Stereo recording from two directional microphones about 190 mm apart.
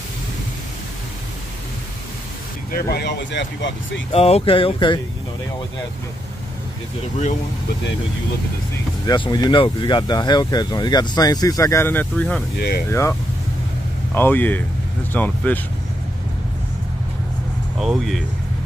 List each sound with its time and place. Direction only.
2.7 s speech: 60° left (ahead or behind)
4.1 s speech: 30° left (ahead or behind)
9.0 s speech: 25° left (ahead or behind); by 12.4 s 5° left (ahead or behind)
12.5 s speech: 60° left (ahead or behind)
14.1 s speech: 10° left (ahead or behind)
17.7 s speech: centre (ahead or behind)